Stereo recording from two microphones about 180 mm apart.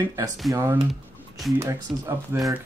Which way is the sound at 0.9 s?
Centre (ahead or behind).